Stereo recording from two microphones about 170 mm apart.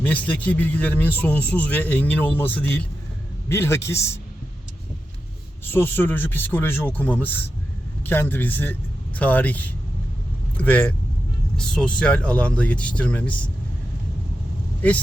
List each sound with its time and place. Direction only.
0.0 s speech: 10° left (ahead or behind)
5.6 s speech: 10° left (ahead or behind)